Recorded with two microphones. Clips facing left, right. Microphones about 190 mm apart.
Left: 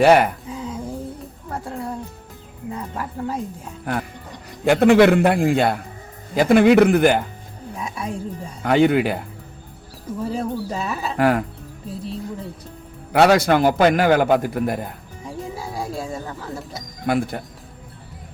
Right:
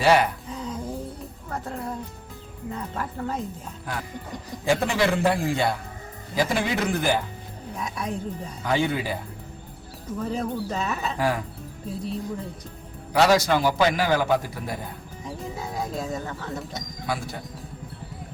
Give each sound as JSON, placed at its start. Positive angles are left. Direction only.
{"t": 0.0, "sound": "a man's voice", "side_deg": 55}
{"t": 0.5, "sound": "a sound", "side_deg": 10}
{"t": 3.0, "sound": "speech", "side_deg": 10}
{"t": 3.9, "sound": "a man's voice", "side_deg": 60}
{"t": 8.6, "sound": "a man's voice", "side_deg": 60}
{"t": 10.2, "sound": "speech", "side_deg": 5}
{"t": 11.2, "sound": "a man's voice", "side_deg": 65}
{"t": 11.9, "sound": "speech", "side_deg": 0}
{"t": 13.1, "sound": "a man's voice", "side_deg": 60}
{"t": 15.5, "sound": "a sound", "side_deg": 10}
{"t": 17.1, "sound": "a man's voice", "side_deg": 60}